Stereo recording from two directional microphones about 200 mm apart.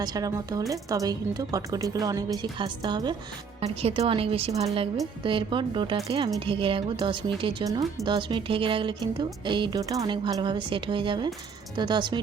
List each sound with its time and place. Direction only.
0.0 s a woman's voice: 20° right (ahead or behind)